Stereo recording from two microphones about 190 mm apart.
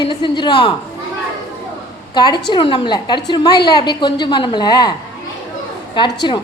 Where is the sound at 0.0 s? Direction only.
25° left (ahead or behind).